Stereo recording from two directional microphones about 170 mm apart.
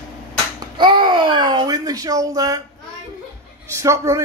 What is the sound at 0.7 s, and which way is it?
A child's voice, 30° right (ahead or behind).